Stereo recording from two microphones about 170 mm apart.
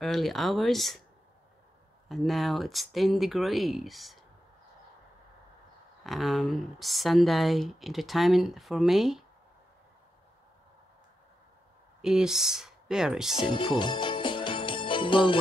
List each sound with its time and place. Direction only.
0.0 s speech: centre (ahead or behind)
2.0 s speech: centre (ahead or behind)
6.0 s speech: centre (ahead or behind)
12.0 s speech: 5° right (ahead or behind)
13.5 s jingle bell: 30° left (ahead or behind)